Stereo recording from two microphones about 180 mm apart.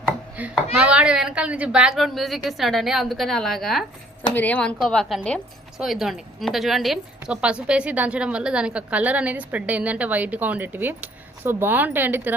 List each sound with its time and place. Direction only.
0.3 s a woman's voice: 5° right (ahead or behind)